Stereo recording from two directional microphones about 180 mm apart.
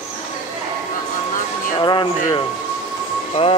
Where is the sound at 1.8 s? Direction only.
25° left (ahead or behind).